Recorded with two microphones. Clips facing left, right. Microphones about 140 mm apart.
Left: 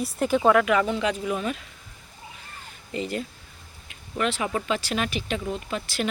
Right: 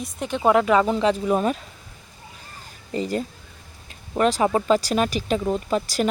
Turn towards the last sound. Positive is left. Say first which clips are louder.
# right 7 dB
turn(degrees=-40)  # may be behind; listen again after turning